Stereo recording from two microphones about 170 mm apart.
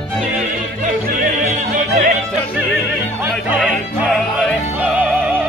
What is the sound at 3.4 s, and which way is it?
Speech, 5° right (ahead or behind).